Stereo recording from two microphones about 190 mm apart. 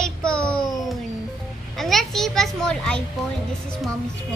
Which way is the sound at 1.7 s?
Centre (ahead or behind).